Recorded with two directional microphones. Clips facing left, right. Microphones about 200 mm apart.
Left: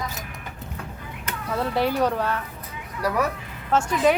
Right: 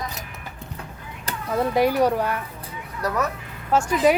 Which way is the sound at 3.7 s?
10° right (ahead or behind).